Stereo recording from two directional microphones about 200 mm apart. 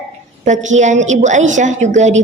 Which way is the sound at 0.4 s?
35° right (ahead or behind).